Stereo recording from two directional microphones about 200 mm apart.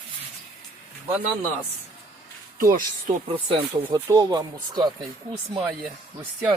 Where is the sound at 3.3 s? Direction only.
25° right (ahead or behind).